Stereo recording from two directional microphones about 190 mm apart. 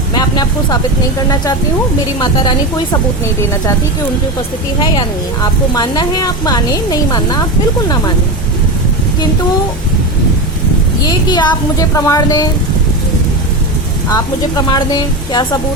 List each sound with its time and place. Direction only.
0.1 s a woman's voice: 20° left (ahead or behind)
2.2 s a woman's voice: 20° left (ahead or behind)
4.8 s a woman's voice: 20° left (ahead or behind)
11.0 s a woman's voice: 20° left (ahead or behind)
14.1 s a woman's voice: 20° left (ahead or behind)